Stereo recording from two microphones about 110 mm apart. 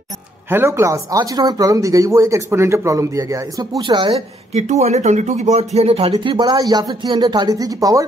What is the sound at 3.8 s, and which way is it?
Speech, 45° right (ahead or behind).